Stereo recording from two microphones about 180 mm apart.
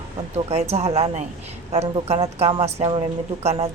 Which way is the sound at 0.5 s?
35° right (ahead or behind).